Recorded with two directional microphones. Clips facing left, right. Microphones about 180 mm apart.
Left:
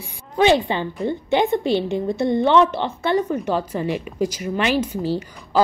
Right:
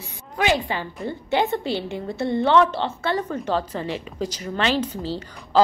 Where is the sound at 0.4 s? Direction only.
25° left (ahead or behind).